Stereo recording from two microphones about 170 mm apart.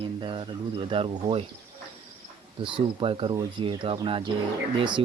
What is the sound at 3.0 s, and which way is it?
Speech, 30° right (ahead or behind).